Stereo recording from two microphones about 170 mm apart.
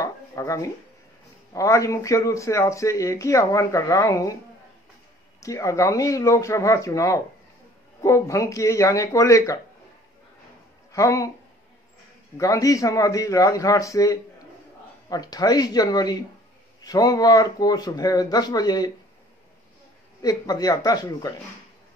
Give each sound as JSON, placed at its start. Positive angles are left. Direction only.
{"t": 0.0, "sound": "speech", "side_deg": 20}
{"t": 5.4, "sound": "speech", "side_deg": 20}
{"t": 10.9, "sound": "speech", "side_deg": 20}
{"t": 12.4, "sound": "speech", "side_deg": 20}
{"t": 20.2, "sound": "speech", "side_deg": 20}